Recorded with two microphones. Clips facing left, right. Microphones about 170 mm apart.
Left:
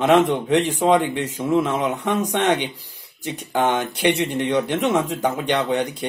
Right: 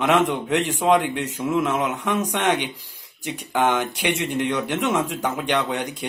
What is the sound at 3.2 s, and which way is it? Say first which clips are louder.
Speech: left 1 dB; 10° right (ahead or behind).